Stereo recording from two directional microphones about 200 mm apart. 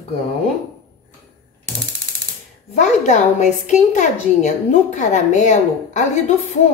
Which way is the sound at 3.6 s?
40° left (ahead or behind).